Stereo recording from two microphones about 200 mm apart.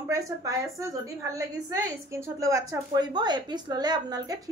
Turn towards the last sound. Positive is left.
turn(degrees=-20)  # may be behind; listen again after turning